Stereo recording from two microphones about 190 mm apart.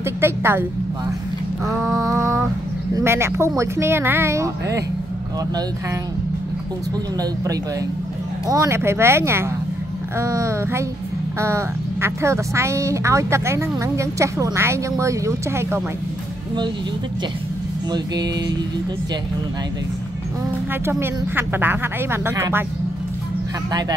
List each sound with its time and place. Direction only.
0.2 s speech: 10° right (ahead or behind)
1.8 s a sound: 15° right (ahead or behind)
3.0 s speech: 15° right (ahead or behind)
8.5 s speech: 15° right (ahead or behind)
17.9 s music: 20° right (ahead or behind)
21.0 s speech: 10° right (ahead or behind)